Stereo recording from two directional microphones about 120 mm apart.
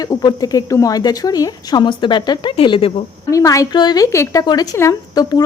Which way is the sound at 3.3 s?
30° left (ahead or behind).